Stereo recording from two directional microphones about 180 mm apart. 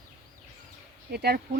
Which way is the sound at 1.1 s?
60° right (ahead or behind).